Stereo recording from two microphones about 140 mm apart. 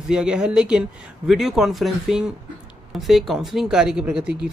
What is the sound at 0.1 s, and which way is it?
Speech, 5° right (ahead or behind).